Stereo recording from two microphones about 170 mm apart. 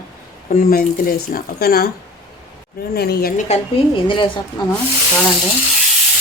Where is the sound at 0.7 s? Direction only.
60° left (ahead or behind).